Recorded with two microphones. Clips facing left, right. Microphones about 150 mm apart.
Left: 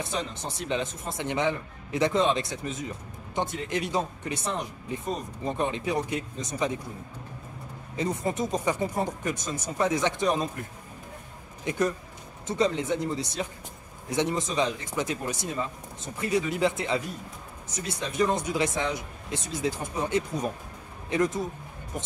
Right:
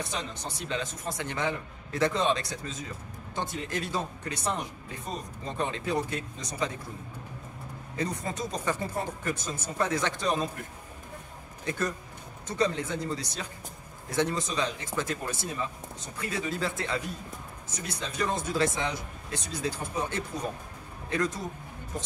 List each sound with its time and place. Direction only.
0.0 s speech: 25° left (ahead or behind)
7.9 s speech: 25° left (ahead or behind)
11.7 s speech: 20° left (ahead or behind)